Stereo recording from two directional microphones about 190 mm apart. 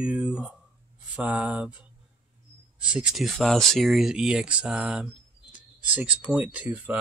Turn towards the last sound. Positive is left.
turn(degrees=-5)  # may be behind; listen again after turning